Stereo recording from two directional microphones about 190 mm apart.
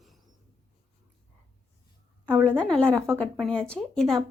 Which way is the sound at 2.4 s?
5° left (ahead or behind).